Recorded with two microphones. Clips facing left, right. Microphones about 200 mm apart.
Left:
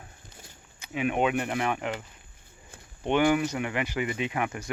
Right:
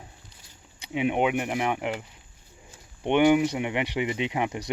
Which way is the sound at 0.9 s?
20° right (ahead or behind).